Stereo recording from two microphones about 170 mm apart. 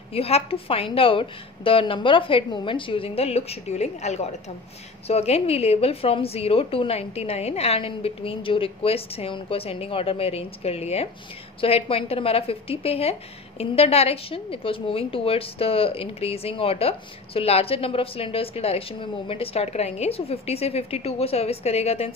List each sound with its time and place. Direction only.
0.1 s a woman's voice: 35° left (ahead or behind)